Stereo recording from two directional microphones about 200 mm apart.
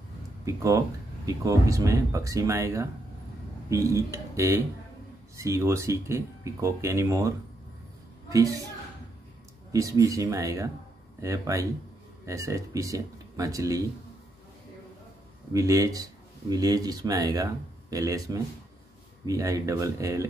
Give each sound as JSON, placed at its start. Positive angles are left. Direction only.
{"t": 0.5, "sound": "speech", "side_deg": -15}
{"t": 9.7, "sound": "speech", "side_deg": -15}
{"t": 15.5, "sound": "speech", "side_deg": -15}